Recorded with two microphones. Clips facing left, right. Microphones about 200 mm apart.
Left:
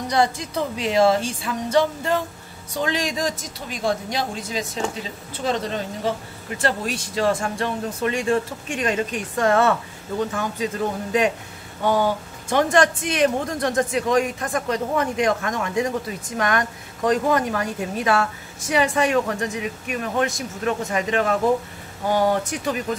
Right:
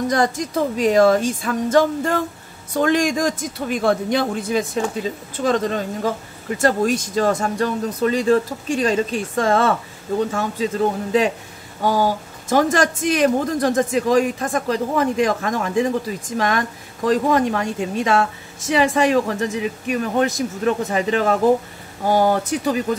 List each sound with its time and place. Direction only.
0.1 s speech: 45° right (ahead or behind); by 15.9 s 30° right (ahead or behind)
17.1 s speech: 30° right (ahead or behind)